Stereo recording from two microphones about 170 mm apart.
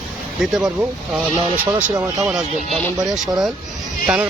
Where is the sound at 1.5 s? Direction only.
20° right (ahead or behind).